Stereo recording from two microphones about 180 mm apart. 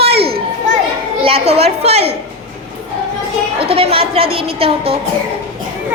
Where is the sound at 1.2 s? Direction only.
35° right (ahead or behind).